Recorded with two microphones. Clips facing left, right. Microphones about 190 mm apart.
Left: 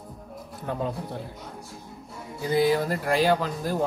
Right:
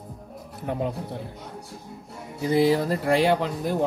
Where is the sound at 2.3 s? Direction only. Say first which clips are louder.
Right 2 dB; 25° right (ahead or behind).